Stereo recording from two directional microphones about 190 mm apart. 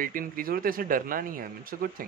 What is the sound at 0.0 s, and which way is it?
Speech, 50° right (ahead or behind).